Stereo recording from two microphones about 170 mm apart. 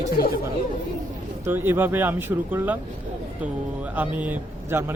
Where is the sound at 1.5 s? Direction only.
10° right (ahead or behind).